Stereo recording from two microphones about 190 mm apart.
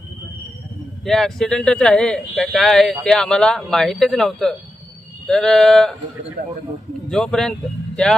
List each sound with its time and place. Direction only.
1.0 s speech: centre (ahead or behind)
6.4 s speech: 50° right (ahead or behind)
7.1 s speech: 5° left (ahead or behind)